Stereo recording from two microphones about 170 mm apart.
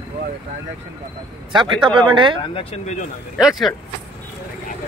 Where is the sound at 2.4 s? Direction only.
35° left (ahead or behind).